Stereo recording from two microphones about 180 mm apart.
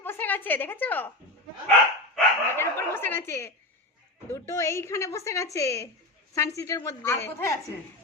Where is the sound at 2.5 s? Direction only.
15° left (ahead or behind).